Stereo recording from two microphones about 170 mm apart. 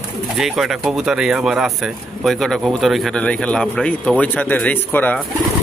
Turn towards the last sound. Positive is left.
turn(degrees=10)  # may be behind; listen again after turning